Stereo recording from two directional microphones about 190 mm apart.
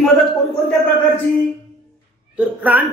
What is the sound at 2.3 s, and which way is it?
Speech, 5° right (ahead or behind).